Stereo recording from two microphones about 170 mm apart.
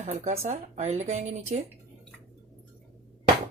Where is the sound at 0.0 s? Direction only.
40° right (ahead or behind).